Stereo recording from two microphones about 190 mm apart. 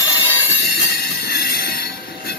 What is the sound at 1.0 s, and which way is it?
Train, 55° left (ahead or behind).